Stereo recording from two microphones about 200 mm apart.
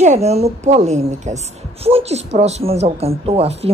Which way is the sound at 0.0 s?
35° right (ahead or behind).